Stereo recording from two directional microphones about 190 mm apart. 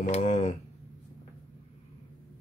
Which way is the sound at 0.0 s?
40° left (ahead or behind).